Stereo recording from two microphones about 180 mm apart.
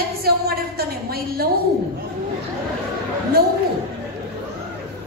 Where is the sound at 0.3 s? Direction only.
60° right (ahead or behind).